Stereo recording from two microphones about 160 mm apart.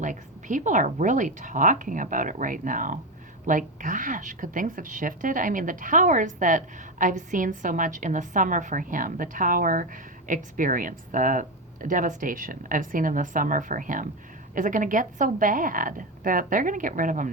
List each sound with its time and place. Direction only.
0.0 s a woman's voice: 55° right (ahead or behind)